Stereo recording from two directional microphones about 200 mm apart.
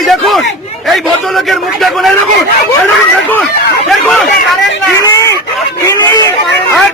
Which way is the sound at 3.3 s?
5° left (ahead or behind).